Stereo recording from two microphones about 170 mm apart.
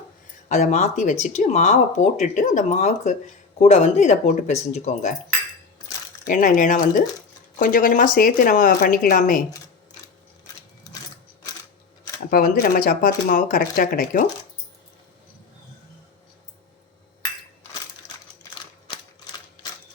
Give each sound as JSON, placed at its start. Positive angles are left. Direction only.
{"t": 0.4, "sound": "speech", "side_deg": 45}
{"t": 6.2, "sound": "speech", "side_deg": 50}
{"t": 12.3, "sound": "speech", "side_deg": 60}